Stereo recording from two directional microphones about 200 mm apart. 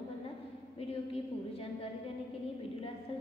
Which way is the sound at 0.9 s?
30° left (ahead or behind).